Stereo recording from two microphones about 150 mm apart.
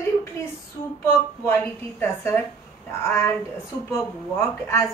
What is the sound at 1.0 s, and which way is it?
A woman's voice, 15° left (ahead or behind).